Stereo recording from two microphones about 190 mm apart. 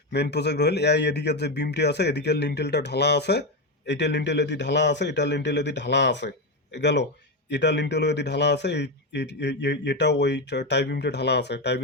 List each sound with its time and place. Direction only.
0.1 s a man's voice: 60° left (ahead or behind)